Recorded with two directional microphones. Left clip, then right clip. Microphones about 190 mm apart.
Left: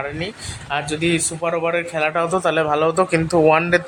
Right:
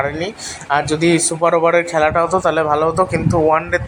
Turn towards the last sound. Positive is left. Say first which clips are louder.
# even
turn(degrees=15)  # may be behind; listen again after turning